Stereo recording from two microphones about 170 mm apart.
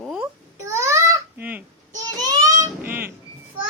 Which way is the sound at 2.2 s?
20° right (ahead or behind).